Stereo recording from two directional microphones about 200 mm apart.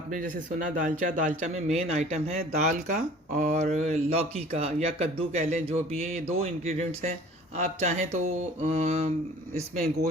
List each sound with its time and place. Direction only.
0.1 s speech: 40° right (ahead or behind)